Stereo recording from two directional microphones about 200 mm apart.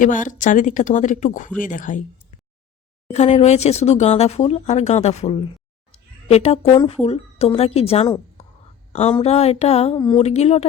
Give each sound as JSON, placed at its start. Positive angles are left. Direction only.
{"t": 0.0, "sound": "speech", "side_deg": 40}
{"t": 3.1, "sound": "a woman's voice", "side_deg": 35}